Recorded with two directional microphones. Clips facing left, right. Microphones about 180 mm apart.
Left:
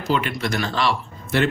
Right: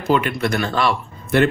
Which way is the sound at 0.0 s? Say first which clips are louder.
Right 4 dB; 55° right (ahead or behind).